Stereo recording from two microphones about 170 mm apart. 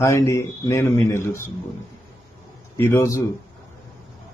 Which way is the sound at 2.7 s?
15° left (ahead or behind).